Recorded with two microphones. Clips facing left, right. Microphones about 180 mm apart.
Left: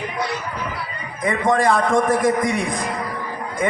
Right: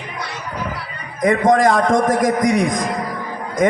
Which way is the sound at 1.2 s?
40° right (ahead or behind).